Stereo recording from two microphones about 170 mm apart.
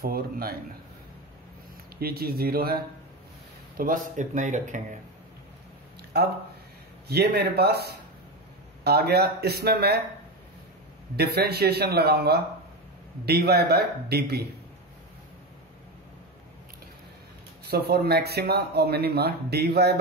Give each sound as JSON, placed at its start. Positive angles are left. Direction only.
{"t": 0.0, "sound": "speech", "side_deg": -65}
{"t": 2.0, "sound": "speech", "side_deg": -65}
{"t": 7.1, "sound": "speech", "side_deg": -70}
{"t": 11.1, "sound": "speech", "side_deg": -70}
{"t": 17.6, "sound": "speech", "side_deg": -65}